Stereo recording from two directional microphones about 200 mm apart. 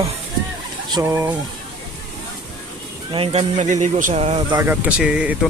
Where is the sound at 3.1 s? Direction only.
30° right (ahead or behind).